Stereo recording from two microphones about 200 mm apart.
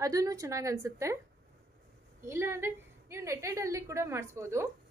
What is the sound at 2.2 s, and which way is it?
A woman's voice, 15° right (ahead or behind).